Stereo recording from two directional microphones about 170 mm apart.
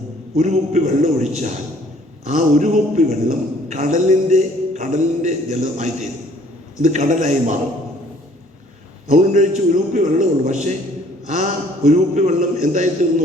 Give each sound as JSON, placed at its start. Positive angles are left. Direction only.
{"t": 0.3, "sound": "a man's voice", "side_deg": -40}
{"t": 9.0, "sound": "a man's voice", "side_deg": -45}
{"t": 11.9, "sound": "a man's voice", "side_deg": -45}